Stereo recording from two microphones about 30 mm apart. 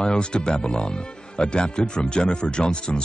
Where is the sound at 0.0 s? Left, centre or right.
Left.